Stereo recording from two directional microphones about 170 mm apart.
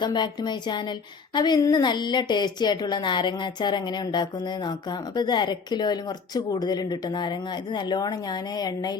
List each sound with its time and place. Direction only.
0.0 s a woman's voice: 25° left (ahead or behind)